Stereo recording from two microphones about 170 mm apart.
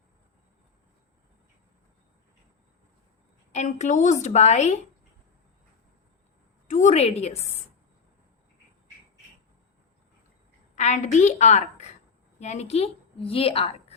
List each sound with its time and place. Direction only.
3.5 s a woman's voice: 45° left (ahead or behind)
6.7 s a woman's voice: 45° left (ahead or behind)
10.8 s a woman's voice: 45° left (ahead or behind)